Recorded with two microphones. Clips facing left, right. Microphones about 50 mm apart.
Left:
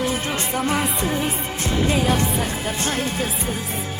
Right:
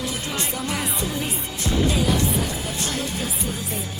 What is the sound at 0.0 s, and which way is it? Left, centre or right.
Music, left.